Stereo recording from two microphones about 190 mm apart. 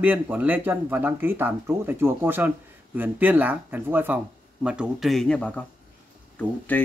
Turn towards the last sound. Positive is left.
turn(degrees=10)  # may be behind; listen again after turning